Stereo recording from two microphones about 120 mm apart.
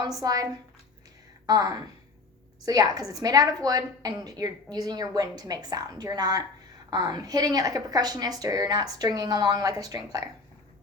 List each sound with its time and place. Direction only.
0.0 s a woman's voice: 30° right (ahead or behind)